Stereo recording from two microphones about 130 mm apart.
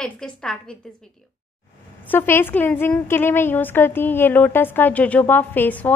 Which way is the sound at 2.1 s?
15° left (ahead or behind).